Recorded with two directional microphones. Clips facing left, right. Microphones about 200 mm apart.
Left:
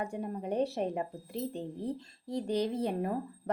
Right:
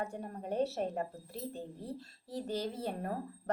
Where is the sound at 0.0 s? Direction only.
10° left (ahead or behind).